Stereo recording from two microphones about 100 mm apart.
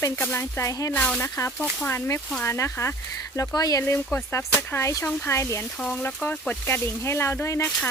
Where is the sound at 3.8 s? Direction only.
25° left (ahead or behind).